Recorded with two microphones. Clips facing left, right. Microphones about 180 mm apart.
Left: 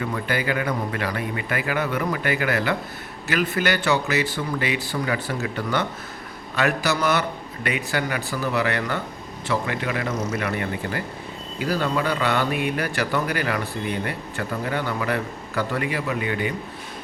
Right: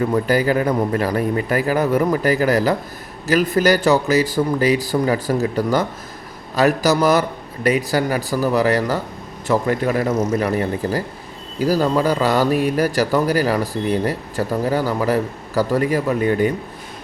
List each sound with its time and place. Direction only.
0.0 s speech: 40° right (ahead or behind)